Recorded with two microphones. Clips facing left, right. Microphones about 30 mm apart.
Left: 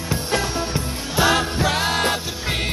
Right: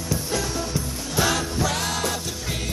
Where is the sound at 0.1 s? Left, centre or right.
Left.